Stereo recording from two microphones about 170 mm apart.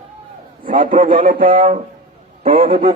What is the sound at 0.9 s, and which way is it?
Speech, 50° right (ahead or behind).